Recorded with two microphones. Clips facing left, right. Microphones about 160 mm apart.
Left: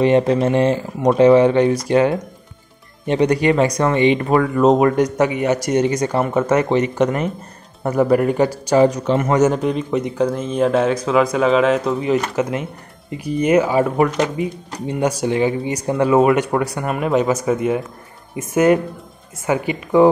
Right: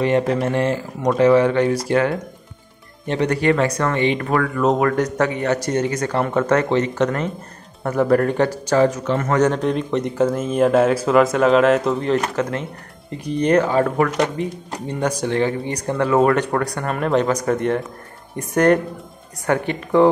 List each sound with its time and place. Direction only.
0.0 s speech: 20° left (ahead or behind)
9.4 s speech: 5° left (ahead or behind)